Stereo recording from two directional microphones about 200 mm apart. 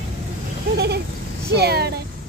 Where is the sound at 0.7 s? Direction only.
55° right (ahead or behind).